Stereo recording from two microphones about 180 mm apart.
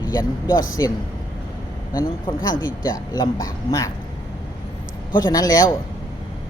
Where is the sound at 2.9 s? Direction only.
20° left (ahead or behind).